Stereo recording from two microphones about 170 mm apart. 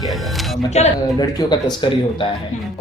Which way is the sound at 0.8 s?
40° left (ahead or behind).